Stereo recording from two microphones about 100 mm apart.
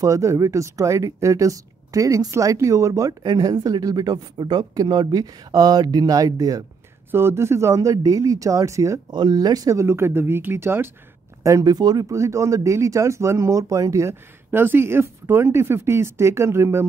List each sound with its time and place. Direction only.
0.0 s speech: 30° right (ahead or behind)
7.1 s speech: 25° right (ahead or behind)
9.1 s speech: 45° right (ahead or behind); by 10.9 s 25° right (ahead or behind)
11.4 s speech: 35° right (ahead or behind)